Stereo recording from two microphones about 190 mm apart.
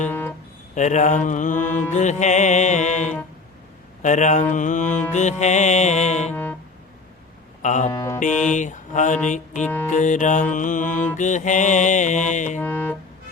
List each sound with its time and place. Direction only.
0.1 s music: 10° left (ahead or behind)
0.8 s music: 40° left (ahead or behind)
6.3 s music: 10° left (ahead or behind)
7.6 s music: 40° left (ahead or behind)
7.9 s mantra: 15° left (ahead or behind)
8.4 s music: 40° left (ahead or behind)
12.5 s music: 10° left (ahead or behind)